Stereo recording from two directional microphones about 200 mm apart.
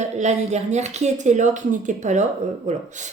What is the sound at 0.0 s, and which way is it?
A woman's voice, 35° right (ahead or behind).